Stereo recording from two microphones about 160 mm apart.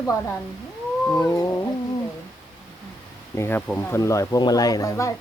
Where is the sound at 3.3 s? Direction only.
15° left (ahead or behind).